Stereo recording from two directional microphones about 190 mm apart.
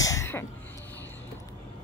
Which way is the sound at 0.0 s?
15° left (ahead or behind).